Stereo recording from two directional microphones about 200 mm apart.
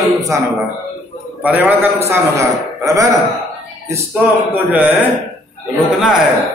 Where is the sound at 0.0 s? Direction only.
15° right (ahead or behind).